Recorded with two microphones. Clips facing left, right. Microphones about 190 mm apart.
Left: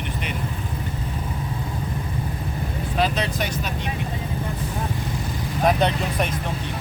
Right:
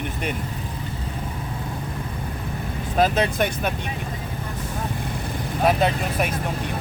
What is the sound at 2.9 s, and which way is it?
Speech, 50° right (ahead or behind).